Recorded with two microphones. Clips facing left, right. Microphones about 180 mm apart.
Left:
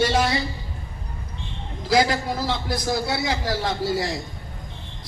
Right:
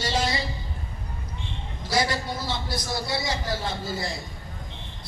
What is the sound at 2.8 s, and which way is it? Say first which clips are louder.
A man's voice: left 6 dB; 90° left.